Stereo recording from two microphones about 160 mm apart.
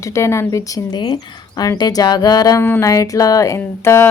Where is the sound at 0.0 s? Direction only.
20° left (ahead or behind).